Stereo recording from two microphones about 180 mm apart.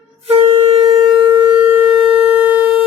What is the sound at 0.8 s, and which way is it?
Shofar, 30° right (ahead or behind).